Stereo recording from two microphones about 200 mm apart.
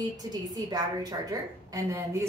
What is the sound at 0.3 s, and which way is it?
A woman's voice, 20° right (ahead or behind).